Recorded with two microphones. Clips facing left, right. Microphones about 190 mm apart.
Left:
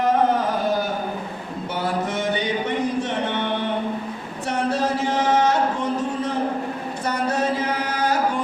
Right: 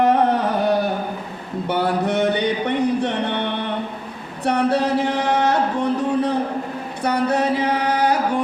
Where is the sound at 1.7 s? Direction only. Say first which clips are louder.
Right 5 dB; 65° right (ahead or behind).